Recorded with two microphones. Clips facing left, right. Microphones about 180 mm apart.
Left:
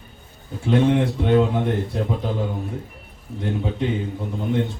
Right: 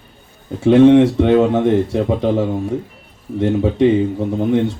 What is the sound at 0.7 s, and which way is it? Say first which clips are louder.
Speech: right 10 dB; 75° right (ahead or behind).